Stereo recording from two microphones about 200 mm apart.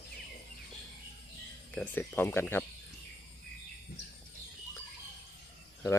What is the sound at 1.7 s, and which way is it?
Speech, 10° left (ahead or behind).